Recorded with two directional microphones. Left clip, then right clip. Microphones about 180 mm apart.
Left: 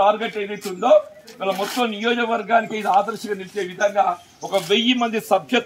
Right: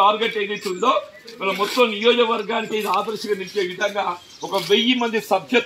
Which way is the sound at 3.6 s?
5° left (ahead or behind).